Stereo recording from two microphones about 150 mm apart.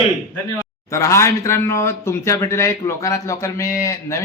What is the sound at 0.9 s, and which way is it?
A man's voice, 20° left (ahead or behind).